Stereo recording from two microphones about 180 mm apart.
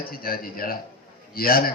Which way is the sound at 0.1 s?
55° left (ahead or behind).